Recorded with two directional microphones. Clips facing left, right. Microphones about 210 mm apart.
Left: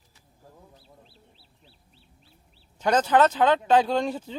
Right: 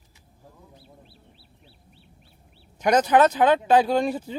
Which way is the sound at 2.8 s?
15° right (ahead or behind).